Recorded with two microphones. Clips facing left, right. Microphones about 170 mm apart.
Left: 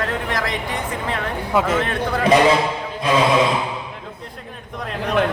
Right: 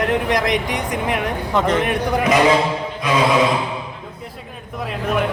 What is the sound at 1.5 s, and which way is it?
Speech, 5° left (ahead or behind).